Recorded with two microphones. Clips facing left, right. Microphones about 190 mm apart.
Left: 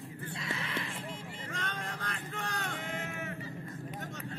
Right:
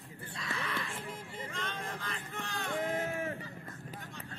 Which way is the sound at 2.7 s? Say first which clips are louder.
Right 6 dB; 35° right (ahead or behind).